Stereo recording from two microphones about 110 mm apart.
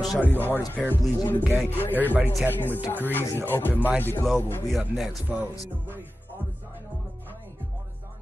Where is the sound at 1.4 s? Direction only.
15° right (ahead or behind).